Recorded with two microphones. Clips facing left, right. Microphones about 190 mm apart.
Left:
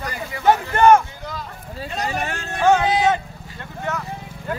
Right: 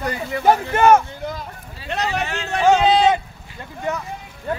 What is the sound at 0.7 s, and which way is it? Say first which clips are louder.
Speech: left 1 dB; 10° right (ahead or behind).